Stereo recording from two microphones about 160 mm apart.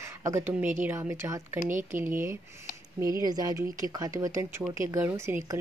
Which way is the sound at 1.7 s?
50° right (ahead or behind).